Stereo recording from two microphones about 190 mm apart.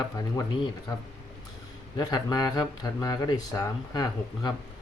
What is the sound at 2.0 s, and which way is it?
Speech, 20° left (ahead or behind).